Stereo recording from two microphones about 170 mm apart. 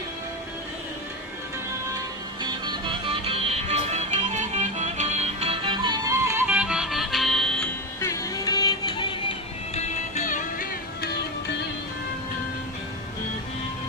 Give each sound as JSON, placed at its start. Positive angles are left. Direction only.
{"t": 2.4, "sound": "music", "side_deg": -30}
{"t": 8.0, "sound": "music", "side_deg": 20}
{"t": 9.7, "sound": "music", "side_deg": 40}